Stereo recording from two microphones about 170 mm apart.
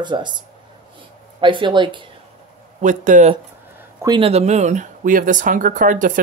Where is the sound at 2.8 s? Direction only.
45° right (ahead or behind).